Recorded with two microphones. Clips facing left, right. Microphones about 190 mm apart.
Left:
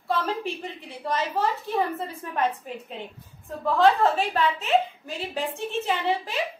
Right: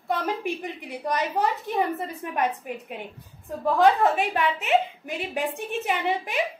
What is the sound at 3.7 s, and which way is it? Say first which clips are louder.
A woman's voice: even; 15° right (ahead or behind).